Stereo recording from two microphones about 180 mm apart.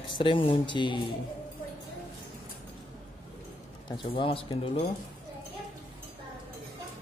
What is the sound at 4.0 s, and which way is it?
Speech, 30° left (ahead or behind).